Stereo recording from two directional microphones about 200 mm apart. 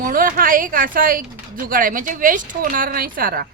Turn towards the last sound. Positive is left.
turn(degrees=-45)  # may be behind; listen again after turning